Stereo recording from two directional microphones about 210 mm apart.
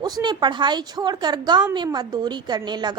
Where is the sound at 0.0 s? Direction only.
20° right (ahead or behind).